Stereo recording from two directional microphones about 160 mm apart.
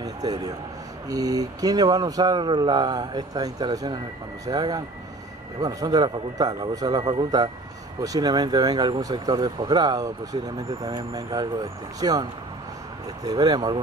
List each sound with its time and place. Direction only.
0.0 s a man's voice: 25° right (ahead or behind)